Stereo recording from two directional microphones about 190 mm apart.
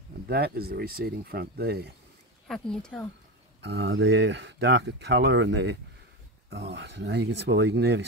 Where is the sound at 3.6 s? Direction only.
65° right (ahead or behind).